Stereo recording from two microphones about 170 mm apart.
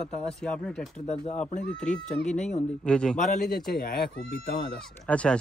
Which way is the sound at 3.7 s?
60° left (ahead or behind).